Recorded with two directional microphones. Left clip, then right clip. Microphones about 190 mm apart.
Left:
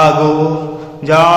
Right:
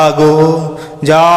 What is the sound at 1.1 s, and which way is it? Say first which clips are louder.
Speech: right 2 dB; 35° right (ahead or behind).